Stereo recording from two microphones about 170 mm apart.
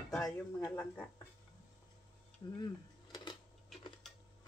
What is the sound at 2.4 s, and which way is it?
Speech, 25° left (ahead or behind).